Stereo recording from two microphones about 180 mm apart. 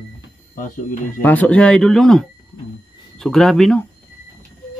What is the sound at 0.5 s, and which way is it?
Speech, 50° left (ahead or behind).